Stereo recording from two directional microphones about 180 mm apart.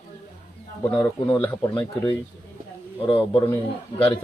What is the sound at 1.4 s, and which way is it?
Speech, 10° left (ahead or behind).